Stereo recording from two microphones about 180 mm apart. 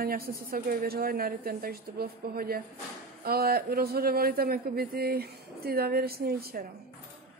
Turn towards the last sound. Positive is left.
turn(degrees=-60)  # may be behind; listen again after turning